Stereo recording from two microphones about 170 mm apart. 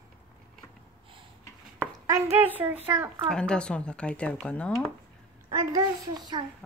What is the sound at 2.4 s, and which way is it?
Speech, 10° right (ahead or behind).